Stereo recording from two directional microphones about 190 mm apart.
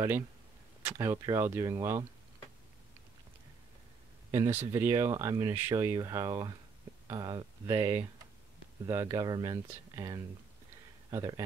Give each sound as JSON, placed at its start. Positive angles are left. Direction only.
{"t": 0.8, "sound": "speech", "side_deg": -15}
{"t": 4.3, "sound": "speech", "side_deg": -15}